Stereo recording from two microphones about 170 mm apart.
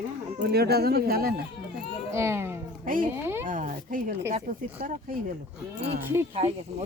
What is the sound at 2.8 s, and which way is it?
Speech, 55° right (ahead or behind).